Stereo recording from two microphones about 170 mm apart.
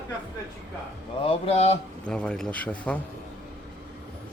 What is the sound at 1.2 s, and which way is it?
Speech, 35° left (ahead or behind).